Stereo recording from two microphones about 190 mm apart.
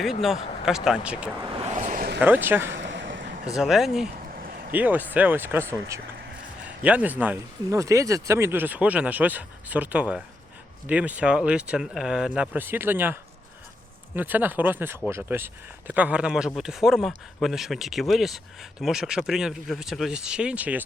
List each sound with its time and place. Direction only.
0.0 s speech: centre (ahead or behind)
1.7 s a sound: 45° right (ahead or behind)
2.2 s speech: 10° right (ahead or behind)
2.7 s a sound: 75° right (ahead or behind)
3.5 s speech: centre (ahead or behind)
4.4 s vehicle: 50° right (ahead or behind)
4.7 s speech: 10° right (ahead or behind)
14.2 s speech: 10° right (ahead or behind)